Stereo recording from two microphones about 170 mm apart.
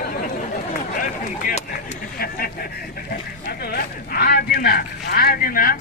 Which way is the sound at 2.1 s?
60° left (ahead or behind).